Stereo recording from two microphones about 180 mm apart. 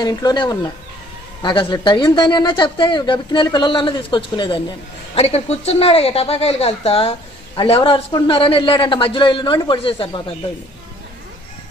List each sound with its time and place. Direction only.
0.0 s speech: 20° left (ahead or behind)